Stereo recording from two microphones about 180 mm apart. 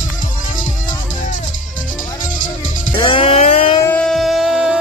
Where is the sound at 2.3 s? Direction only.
45° left (ahead or behind).